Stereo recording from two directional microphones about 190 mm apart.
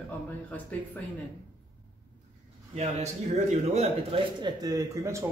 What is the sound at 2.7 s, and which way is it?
Speech, 35° right (ahead or behind).